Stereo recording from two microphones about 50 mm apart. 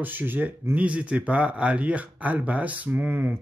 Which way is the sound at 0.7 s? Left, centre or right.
Right.